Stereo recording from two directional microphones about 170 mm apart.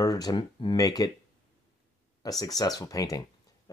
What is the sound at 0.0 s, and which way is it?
Speech, 20° left (ahead or behind).